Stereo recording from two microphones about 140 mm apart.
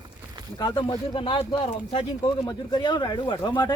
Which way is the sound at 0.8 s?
35° left (ahead or behind).